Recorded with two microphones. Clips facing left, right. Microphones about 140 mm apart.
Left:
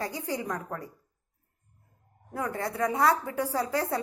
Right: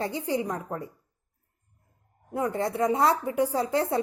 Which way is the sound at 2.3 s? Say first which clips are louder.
Right 4 dB; 25° right (ahead or behind).